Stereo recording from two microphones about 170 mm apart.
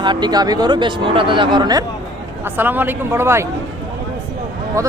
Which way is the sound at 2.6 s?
10° right (ahead or behind).